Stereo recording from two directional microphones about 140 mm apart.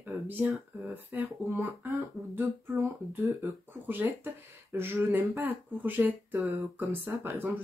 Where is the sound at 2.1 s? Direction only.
Centre (ahead or behind).